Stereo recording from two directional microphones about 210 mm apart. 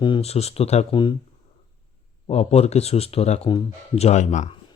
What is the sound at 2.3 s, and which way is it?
Speech, 30° left (ahead or behind).